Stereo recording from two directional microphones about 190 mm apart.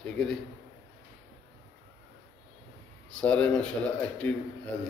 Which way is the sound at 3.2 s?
5° left (ahead or behind).